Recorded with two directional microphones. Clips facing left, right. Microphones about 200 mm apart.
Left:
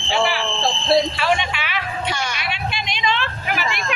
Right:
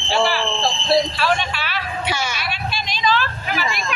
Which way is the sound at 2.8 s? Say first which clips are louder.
Right 4 dB; 25° left (ahead or behind).